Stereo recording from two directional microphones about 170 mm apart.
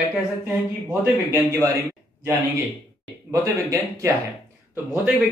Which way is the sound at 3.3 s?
15° right (ahead or behind).